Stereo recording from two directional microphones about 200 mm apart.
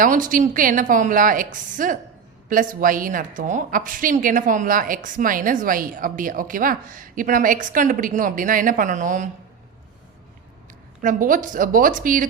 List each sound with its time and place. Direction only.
0.0 s a woman's voice: 40° right (ahead or behind)
11.0 s a woman's voice: 40° right (ahead or behind)